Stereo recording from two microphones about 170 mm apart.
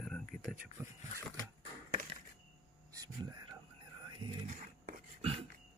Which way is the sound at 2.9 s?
25° right (ahead or behind).